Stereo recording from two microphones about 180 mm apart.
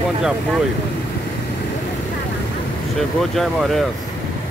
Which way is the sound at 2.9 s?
Centre (ahead or behind).